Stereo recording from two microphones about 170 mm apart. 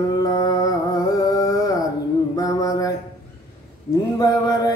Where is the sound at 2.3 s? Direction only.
20° left (ahead or behind).